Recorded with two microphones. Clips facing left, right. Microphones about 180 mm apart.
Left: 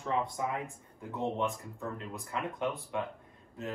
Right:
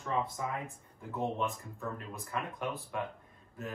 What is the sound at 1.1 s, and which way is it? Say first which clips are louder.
Speech: left 1 dB; 20° left (ahead or behind).